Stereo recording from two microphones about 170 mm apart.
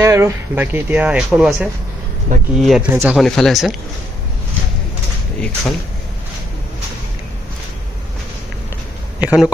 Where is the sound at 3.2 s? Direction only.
Centre (ahead or behind).